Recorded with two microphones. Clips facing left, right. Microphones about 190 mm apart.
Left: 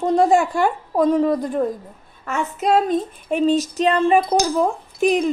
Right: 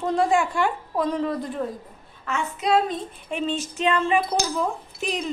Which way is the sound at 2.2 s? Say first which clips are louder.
Left 4 dB; 45° left (ahead or behind).